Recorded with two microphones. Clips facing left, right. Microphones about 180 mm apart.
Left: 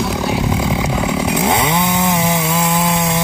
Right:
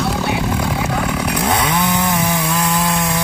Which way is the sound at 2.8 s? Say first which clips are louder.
Left 2 dB; 20° left (ahead or behind).